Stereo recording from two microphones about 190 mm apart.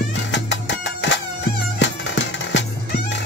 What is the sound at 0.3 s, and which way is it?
Music, 70° left (ahead or behind).